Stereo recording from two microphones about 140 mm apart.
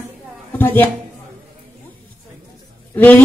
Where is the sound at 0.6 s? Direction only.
15° left (ahead or behind).